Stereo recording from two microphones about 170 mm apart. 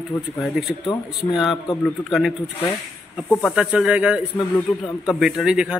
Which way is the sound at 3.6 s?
5° right (ahead or behind).